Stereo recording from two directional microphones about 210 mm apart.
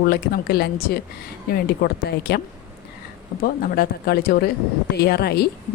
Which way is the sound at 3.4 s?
45° left (ahead or behind).